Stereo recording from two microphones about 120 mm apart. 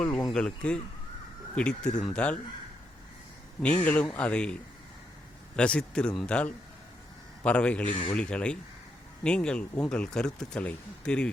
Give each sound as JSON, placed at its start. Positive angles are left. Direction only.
{"t": 0.3, "sound": "speech", "side_deg": 10}
{"t": 3.6, "sound": "speech", "side_deg": 10}
{"t": 5.5, "sound": "speech", "side_deg": 10}